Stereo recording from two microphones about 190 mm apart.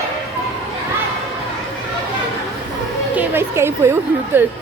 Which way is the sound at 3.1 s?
10° right (ahead or behind).